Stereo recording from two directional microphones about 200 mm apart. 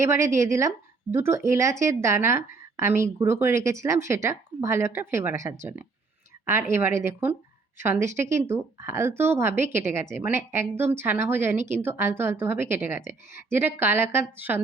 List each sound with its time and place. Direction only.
0.0 s speech: 15° right (ahead or behind)